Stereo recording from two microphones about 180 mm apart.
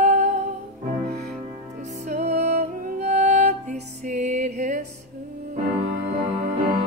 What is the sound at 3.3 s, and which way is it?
Music, 40° right (ahead or behind).